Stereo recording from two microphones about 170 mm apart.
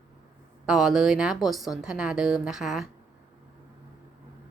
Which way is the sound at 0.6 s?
5° right (ahead or behind).